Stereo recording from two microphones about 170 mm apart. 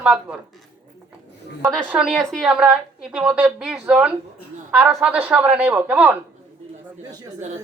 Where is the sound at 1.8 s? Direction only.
5° right (ahead or behind).